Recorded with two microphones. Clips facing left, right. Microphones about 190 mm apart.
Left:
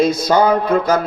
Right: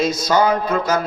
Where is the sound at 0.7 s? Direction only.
35° left (ahead or behind).